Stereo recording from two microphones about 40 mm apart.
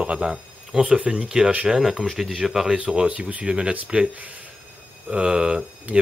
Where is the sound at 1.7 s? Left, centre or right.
Centre.